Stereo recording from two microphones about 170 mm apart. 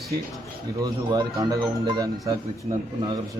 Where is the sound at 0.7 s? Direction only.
20° right (ahead or behind).